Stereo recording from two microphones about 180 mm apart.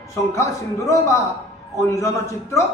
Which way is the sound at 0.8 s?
15° left (ahead or behind).